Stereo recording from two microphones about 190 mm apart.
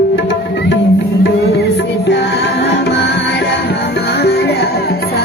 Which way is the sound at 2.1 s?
65° left (ahead or behind).